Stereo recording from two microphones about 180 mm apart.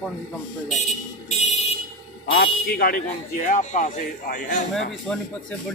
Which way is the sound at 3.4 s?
45° left (ahead or behind).